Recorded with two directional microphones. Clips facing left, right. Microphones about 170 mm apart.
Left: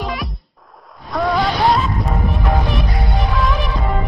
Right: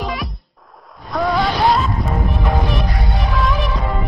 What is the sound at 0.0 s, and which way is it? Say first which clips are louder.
Music: even; centre (ahead or behind).